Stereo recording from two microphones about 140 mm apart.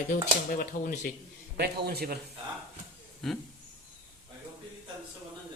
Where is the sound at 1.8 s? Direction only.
90° right.